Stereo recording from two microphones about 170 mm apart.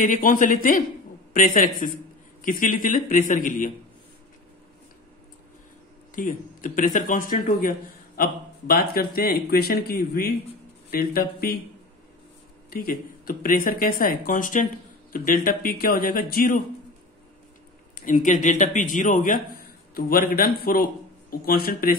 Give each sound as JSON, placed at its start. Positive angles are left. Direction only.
{"t": 0.0, "sound": "speech", "side_deg": 50}
{"t": 6.1, "sound": "speech", "side_deg": 50}
{"t": 12.6, "sound": "speech", "side_deg": 60}
{"t": 17.9, "sound": "speech", "side_deg": 50}